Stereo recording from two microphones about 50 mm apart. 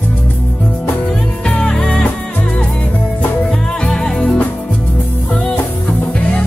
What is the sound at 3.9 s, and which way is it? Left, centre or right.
Music, centre.